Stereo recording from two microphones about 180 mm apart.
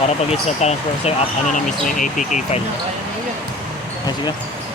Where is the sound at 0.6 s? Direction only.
35° left (ahead or behind).